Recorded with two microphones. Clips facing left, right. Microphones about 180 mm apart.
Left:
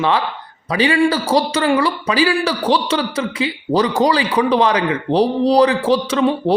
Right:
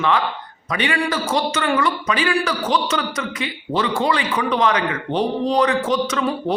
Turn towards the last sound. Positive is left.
turn(degrees=30)  # may be behind; listen again after turning